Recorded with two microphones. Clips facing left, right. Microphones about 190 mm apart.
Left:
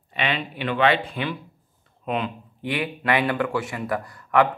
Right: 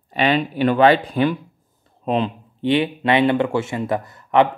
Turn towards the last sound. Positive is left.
turn(degrees=-20)  # may be behind; listen again after turning